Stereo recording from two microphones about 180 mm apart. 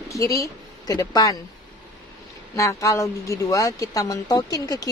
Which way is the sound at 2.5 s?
15° left (ahead or behind).